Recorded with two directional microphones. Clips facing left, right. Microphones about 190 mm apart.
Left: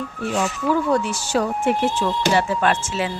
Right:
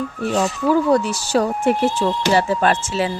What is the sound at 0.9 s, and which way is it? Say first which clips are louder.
Speech: right 3 dB; 35° right (ahead or behind).